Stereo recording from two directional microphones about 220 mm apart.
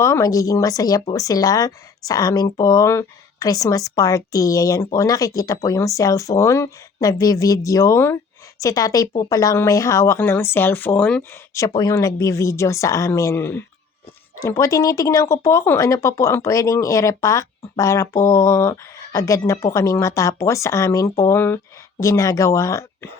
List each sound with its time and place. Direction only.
0.0 s speech: 15° left (ahead or behind)